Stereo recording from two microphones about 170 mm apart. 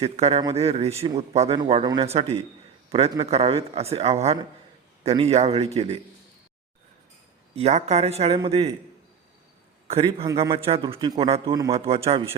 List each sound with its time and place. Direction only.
0.0 s speech: 35° right (ahead or behind)
7.5 s speech: 40° right (ahead or behind)
9.8 s a man's voice: 35° right (ahead or behind)